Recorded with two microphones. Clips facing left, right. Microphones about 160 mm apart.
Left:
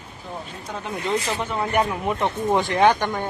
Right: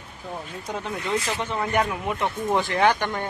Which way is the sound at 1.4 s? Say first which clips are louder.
Left 2 dB; 10° left (ahead or behind).